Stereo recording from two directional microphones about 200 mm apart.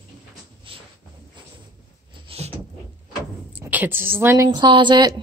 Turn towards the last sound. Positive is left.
turn(degrees=-20)  # may be behind; listen again after turning